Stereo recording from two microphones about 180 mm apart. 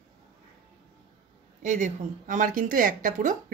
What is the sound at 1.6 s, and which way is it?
Speech, 40° right (ahead or behind).